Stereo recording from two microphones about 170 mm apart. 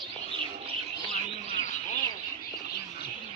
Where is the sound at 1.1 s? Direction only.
40° left (ahead or behind).